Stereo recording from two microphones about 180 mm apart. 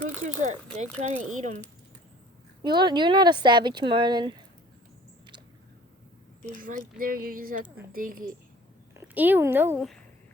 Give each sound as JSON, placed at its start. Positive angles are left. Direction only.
{"t": 0.4, "sound": "speech", "side_deg": -40}
{"t": 2.6, "sound": "speech", "side_deg": -25}
{"t": 6.6, "sound": "speech", "side_deg": -50}
{"t": 9.0, "sound": "speech", "side_deg": -10}